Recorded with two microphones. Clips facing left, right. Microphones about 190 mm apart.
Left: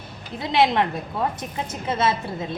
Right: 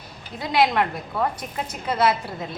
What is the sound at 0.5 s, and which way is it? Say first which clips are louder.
Speech: left 1 dB; 25° left (ahead or behind).